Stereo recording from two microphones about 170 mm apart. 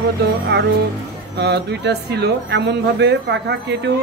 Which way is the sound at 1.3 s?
80° right.